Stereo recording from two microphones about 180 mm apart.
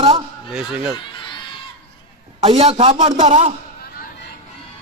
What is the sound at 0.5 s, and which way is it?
Speech, 5° right (ahead or behind).